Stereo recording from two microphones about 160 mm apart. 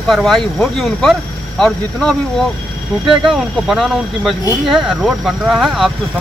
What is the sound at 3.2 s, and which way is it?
Speech, centre (ahead or behind).